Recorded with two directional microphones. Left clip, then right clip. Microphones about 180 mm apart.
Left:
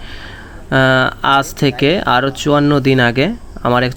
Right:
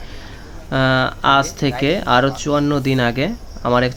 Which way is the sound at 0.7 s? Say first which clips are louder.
Left 5 dB; 25° left (ahead or behind).